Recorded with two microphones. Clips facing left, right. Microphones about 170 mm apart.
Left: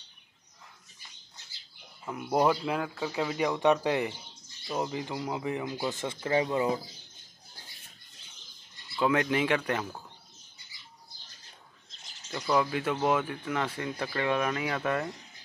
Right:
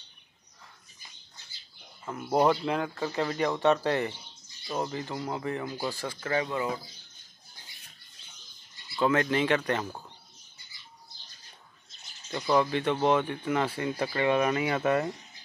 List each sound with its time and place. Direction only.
2.0 s speech: centre (ahead or behind)
5.9 s speech: 25° left (ahead or behind)
9.0 s speech: 10° left (ahead or behind)
12.3 s speech: centre (ahead or behind)